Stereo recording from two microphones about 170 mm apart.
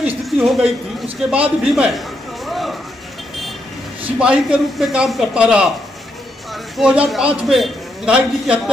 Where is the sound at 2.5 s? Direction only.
Centre (ahead or behind).